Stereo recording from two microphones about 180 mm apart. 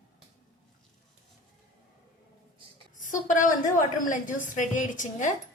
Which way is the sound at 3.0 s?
45° left (ahead or behind).